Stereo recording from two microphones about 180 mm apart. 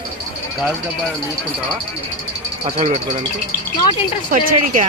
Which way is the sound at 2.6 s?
35° right (ahead or behind).